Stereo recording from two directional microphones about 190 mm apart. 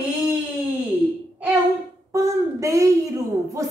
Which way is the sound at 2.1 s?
15° right (ahead or behind).